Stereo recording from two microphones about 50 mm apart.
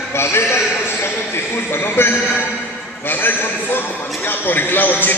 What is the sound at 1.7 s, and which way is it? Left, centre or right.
Speech, left.